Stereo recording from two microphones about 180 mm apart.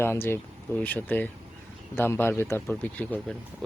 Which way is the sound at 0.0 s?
15° left (ahead or behind).